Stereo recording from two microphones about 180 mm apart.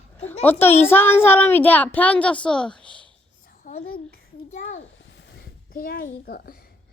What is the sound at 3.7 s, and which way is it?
Speech, 50° left (ahead or behind).